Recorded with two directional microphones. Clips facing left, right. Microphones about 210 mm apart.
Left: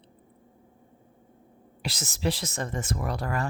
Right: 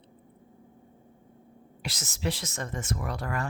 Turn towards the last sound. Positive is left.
turn(degrees=35)  # may be behind; listen again after turning